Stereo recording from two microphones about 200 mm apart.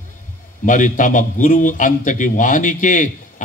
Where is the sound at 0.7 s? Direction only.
40° left (ahead or behind).